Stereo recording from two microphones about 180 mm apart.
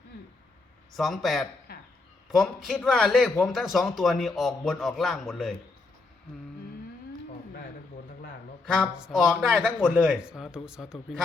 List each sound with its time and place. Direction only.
0.9 s speech: centre (ahead or behind)
1.7 s a sound: 60° left (ahead or behind)
2.3 s speech: centre (ahead or behind)
8.6 s speech: 5° left (ahead or behind)
9.6 s speech: 5° left (ahead or behind)
9.9 s speech: 5° right (ahead or behind)